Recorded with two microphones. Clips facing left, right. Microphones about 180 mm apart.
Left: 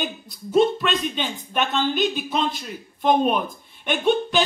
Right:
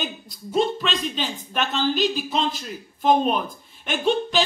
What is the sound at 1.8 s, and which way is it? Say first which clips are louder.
Speech: even; 55° left (ahead or behind).